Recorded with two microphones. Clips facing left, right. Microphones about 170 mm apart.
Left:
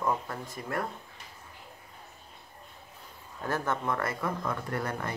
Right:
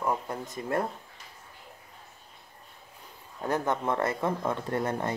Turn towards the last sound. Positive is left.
turn(degrees=-25)  # may be behind; listen again after turning